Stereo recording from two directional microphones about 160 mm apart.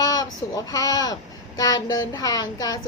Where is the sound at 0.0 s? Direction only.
25° left (ahead or behind).